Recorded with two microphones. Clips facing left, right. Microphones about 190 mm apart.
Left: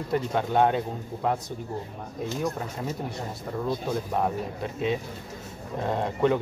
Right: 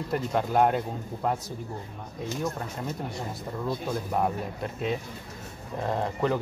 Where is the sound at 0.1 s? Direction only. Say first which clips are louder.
Left 1 dB; centre (ahead or behind).